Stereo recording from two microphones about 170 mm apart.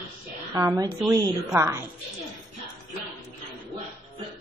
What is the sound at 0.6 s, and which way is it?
A woman's voice, 20° right (ahead or behind).